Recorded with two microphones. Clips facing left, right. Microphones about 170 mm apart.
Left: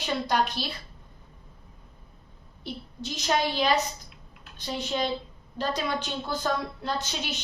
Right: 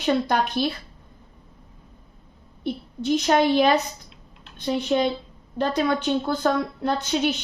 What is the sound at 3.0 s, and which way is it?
A woman's voice, 60° right (ahead or behind).